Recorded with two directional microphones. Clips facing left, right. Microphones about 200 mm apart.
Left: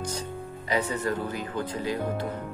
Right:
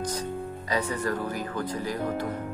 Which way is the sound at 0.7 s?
25° left (ahead or behind).